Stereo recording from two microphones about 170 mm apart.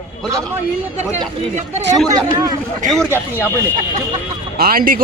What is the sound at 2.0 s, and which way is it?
Speech, 20° right (ahead or behind).